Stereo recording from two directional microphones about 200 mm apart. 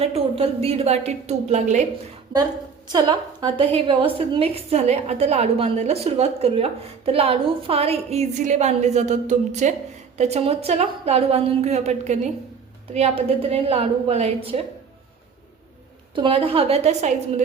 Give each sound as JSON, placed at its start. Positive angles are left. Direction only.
{"t": 0.0, "sound": "a woman's voice", "side_deg": -30}
{"t": 2.3, "sound": "a woman's voice", "side_deg": -25}
{"t": 16.1, "sound": "a woman's voice", "side_deg": -25}